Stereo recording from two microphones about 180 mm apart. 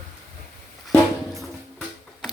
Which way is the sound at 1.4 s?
Centre (ahead or behind).